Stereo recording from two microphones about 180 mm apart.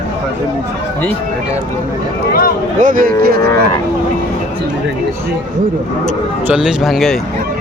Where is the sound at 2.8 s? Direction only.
45° right (ahead or behind).